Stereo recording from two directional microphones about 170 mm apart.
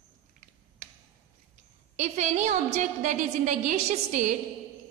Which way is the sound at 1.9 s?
45° right (ahead or behind).